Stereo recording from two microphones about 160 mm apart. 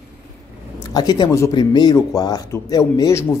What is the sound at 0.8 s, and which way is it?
Speech, 25° left (ahead or behind).